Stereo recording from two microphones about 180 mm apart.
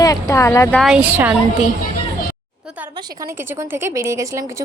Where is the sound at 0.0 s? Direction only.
20° left (ahead or behind).